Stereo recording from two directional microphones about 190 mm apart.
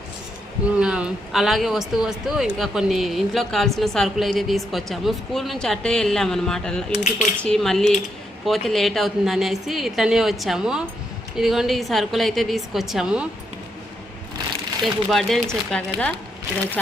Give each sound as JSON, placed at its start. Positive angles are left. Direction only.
{"t": 0.8, "sound": "a woman's voice", "side_deg": -5}
{"t": 6.9, "sound": "speech", "side_deg": 40}
{"t": 7.3, "sound": "a woman's voice", "side_deg": 5}
{"t": 15.1, "sound": "a woman's voice", "side_deg": 0}